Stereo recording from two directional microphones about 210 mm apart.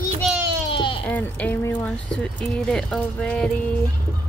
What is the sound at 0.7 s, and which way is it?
Baby cry, 25° left (ahead or behind).